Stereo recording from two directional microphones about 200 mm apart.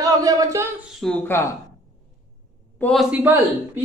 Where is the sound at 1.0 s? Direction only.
5° left (ahead or behind).